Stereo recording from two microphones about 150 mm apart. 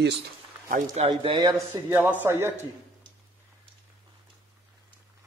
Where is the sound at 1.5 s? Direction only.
20° right (ahead or behind).